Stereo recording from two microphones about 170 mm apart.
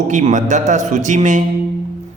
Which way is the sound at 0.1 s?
45° right (ahead or behind).